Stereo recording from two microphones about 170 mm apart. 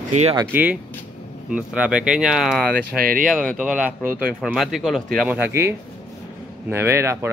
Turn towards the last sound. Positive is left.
turn(degrees=-15)  # may be behind; listen again after turning